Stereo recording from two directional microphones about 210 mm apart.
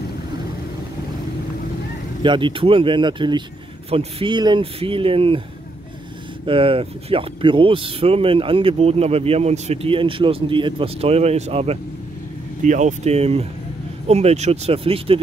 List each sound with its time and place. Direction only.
2.2 s speech: 25° right (ahead or behind)
6.4 s speech: 25° right (ahead or behind)